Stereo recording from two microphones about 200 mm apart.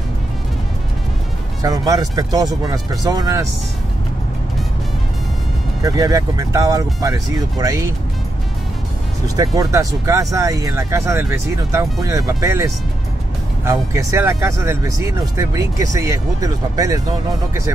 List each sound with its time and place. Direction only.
1.6 s speech: 15° right (ahead or behind)
5.8 s speech: 15° right (ahead or behind)
9.4 s speech: 15° right (ahead or behind)